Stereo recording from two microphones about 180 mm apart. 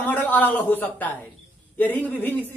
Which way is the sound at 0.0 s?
10° left (ahead or behind).